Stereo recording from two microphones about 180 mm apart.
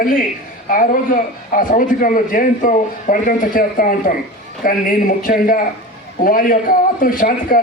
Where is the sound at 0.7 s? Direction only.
50° left (ahead or behind).